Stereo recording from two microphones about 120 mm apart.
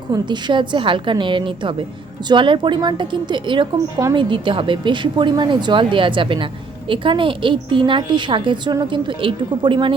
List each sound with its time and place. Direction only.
0.1 s a woman's voice: 40° right (ahead or behind)